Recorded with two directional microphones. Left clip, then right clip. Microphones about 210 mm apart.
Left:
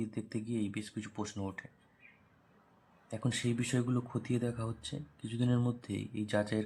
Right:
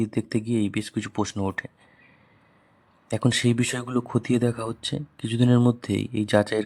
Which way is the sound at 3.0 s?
45° right (ahead or behind).